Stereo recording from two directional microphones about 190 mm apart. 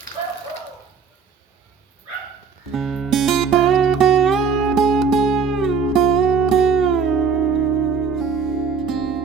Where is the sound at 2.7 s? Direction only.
Centre (ahead or behind).